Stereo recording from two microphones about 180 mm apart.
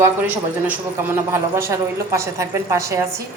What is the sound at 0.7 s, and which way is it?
A woman's voice, 15° right (ahead or behind).